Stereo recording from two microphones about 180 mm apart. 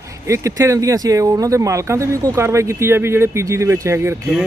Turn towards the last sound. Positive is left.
turn(degrees=-15)  # may be behind; listen again after turning